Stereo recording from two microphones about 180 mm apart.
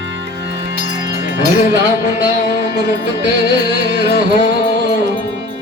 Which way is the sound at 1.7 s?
80° right.